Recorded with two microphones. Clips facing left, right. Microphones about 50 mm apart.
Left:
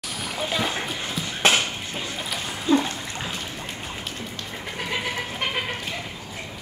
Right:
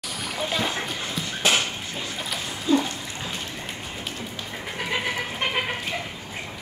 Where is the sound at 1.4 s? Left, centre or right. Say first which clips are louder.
Left 2 dB; left.